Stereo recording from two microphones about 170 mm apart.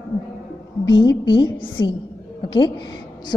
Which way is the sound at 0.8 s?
25° left (ahead or behind).